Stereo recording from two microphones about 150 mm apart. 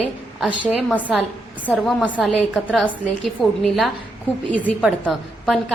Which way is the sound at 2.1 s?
5° right (ahead or behind).